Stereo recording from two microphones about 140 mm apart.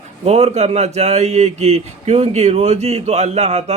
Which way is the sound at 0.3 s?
50° right (ahead or behind).